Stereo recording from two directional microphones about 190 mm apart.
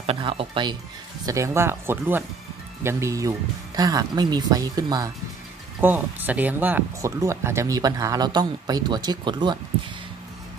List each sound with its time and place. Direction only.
0.0 s speech: 30° right (ahead or behind)
5.8 s speech: 10° right (ahead or behind)